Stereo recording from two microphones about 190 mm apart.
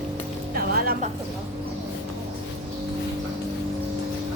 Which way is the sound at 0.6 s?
50° right (ahead or behind).